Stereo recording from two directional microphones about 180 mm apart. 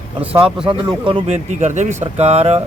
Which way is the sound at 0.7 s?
30° right (ahead or behind).